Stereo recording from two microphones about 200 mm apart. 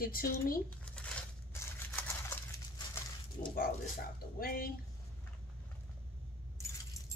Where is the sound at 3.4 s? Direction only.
40° left (ahead or behind).